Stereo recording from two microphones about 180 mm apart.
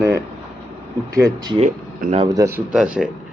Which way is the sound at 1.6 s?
40° right (ahead or behind).